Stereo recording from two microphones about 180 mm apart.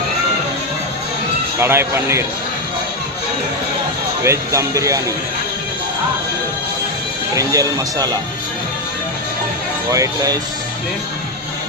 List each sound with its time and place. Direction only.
1.5 s speech: 15° right (ahead or behind)
4.2 s speech: 15° right (ahead or behind)
7.3 s speech: 20° right (ahead or behind)
9.9 s speech: 20° right (ahead or behind)